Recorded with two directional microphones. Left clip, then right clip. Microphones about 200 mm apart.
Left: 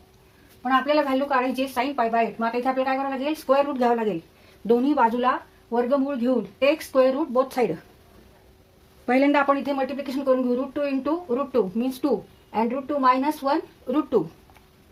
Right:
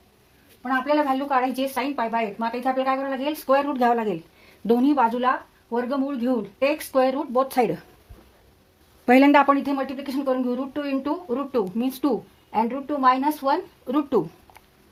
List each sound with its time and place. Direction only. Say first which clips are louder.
1.3 s a woman's voice: right 1 dB; 35° right (ahead or behind)
9.0 s a woman's voice: right 4 dB; 50° right (ahead or behind); by 14.2 s 35° right (ahead or behind)